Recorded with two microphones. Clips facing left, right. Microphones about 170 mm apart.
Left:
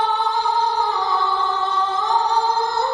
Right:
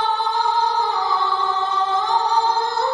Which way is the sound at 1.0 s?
Centre (ahead or behind).